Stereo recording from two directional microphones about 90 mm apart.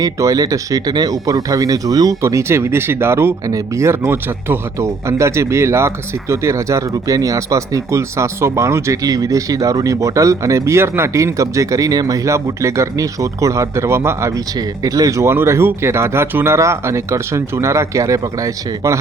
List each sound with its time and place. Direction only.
0.0 s speech: 40° right (ahead or behind)